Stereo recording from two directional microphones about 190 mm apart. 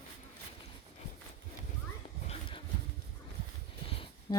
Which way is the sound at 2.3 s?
25° left (ahead or behind).